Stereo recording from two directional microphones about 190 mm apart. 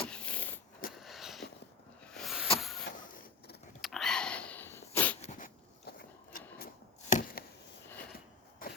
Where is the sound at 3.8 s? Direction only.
Centre (ahead or behind).